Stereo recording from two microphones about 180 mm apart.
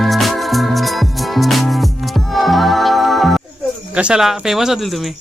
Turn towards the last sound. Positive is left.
turn(degrees=0)  # may be behind; listen again after turning